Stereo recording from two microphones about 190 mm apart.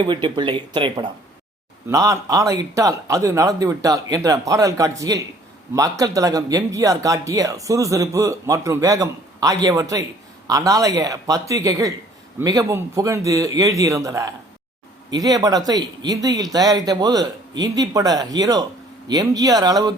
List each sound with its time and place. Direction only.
0.0 s speech: 25° right (ahead or behind)